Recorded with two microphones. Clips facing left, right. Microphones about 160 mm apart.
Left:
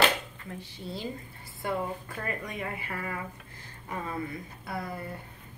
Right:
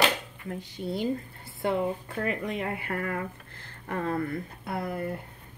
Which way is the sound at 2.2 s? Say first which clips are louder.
Right 5 dB; 70° right (ahead or behind).